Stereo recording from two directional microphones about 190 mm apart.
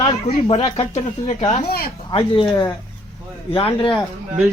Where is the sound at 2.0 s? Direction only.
25° left (ahead or behind).